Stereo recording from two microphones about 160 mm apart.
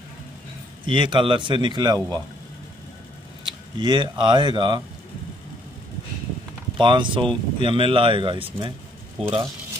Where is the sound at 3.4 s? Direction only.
30° right (ahead or behind).